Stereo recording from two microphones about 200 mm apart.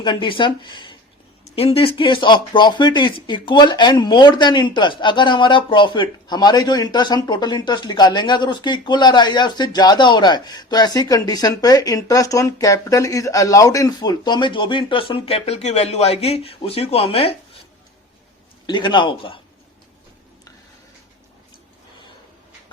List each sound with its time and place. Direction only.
0.0 s speech: 25° left (ahead or behind)
18.6 s speech: 25° left (ahead or behind)